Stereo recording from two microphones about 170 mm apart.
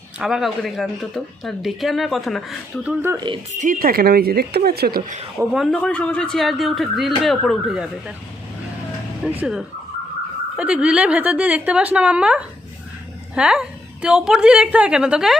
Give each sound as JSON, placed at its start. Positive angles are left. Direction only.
{"t": 0.2, "sound": "speech", "side_deg": 0}
{"t": 3.2, "sound": "speech", "side_deg": -30}
{"t": 3.5, "sound": "speech", "side_deg": -50}
{"t": 5.5, "sound": "speech", "side_deg": 5}
{"t": 9.4, "sound": "a woman's voice", "side_deg": -5}